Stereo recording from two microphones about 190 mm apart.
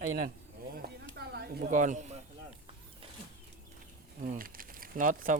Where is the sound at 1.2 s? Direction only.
60° right (ahead or behind).